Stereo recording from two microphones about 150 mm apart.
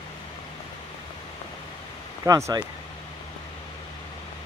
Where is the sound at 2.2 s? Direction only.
20° right (ahead or behind).